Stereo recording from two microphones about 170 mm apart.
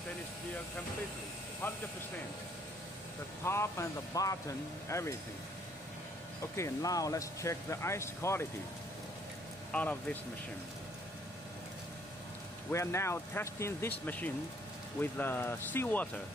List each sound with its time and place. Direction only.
3.4 s speech: 15° left (ahead or behind)
6.5 s speech: 20° left (ahead or behind)
9.7 s speech: 10° left (ahead or behind)
12.7 s speech: 15° left (ahead or behind)